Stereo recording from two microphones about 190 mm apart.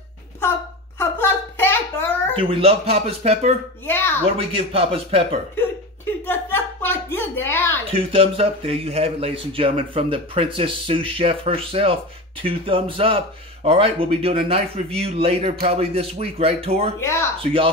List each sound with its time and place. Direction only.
1.6 s a sound: 10° left (ahead or behind)
2.3 s a man's voice: 30° right (ahead or behind)
3.8 s speech: 10° left (ahead or behind)
4.2 s a man's voice: 30° right (ahead or behind)
6.2 s a sound: 10° left (ahead or behind)
7.9 s a man's voice: 30° right (ahead or behind)
17.0 s speech: 15° left (ahead or behind)
17.4 s a man's voice: 30° right (ahead or behind)